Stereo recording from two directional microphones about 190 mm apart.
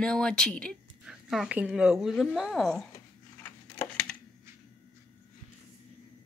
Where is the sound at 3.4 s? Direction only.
10° left (ahead or behind).